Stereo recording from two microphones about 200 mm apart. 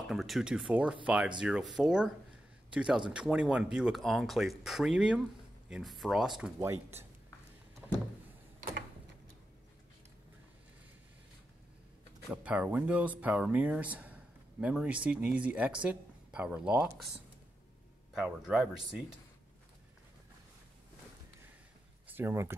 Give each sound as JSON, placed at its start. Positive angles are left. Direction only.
{"t": 0.0, "sound": "speech", "side_deg": 0}
{"t": 6.6, "sound": "speech", "side_deg": -10}
{"t": 8.5, "sound": "a sound", "side_deg": -45}
{"t": 12.4, "sound": "speech", "side_deg": -10}
{"t": 18.1, "sound": "speech", "side_deg": -5}
{"t": 22.0, "sound": "speech", "side_deg": -10}